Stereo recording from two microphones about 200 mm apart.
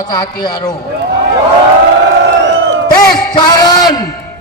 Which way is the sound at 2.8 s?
20° left (ahead or behind).